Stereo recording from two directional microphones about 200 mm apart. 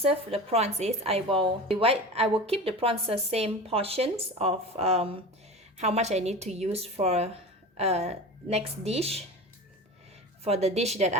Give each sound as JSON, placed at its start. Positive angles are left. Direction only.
{"t": 0.0, "sound": "a woman's voice", "side_deg": -30}
{"t": 10.4, "sound": "a woman's voice", "side_deg": -30}